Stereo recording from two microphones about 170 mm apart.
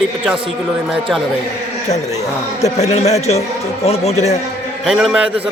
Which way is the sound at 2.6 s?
40° left (ahead or behind).